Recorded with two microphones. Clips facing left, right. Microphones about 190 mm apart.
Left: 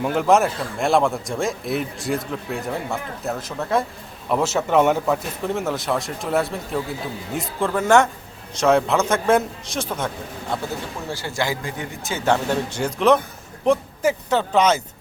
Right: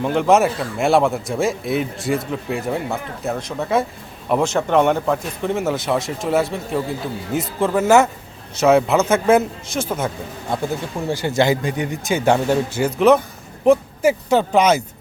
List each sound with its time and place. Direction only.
0.0 s a man's voice: 5° left (ahead or behind)
11.1 s speech: 20° right (ahead or behind)